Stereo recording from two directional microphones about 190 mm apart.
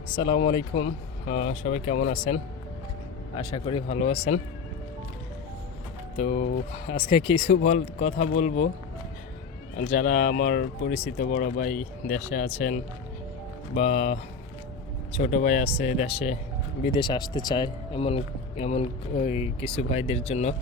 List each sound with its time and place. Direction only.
0.2 s speech: 30° left (ahead or behind)
6.1 s speech: 40° left (ahead or behind)
9.7 s speech: 45° left (ahead or behind)